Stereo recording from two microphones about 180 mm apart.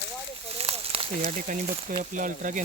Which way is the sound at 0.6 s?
35° right (ahead or behind).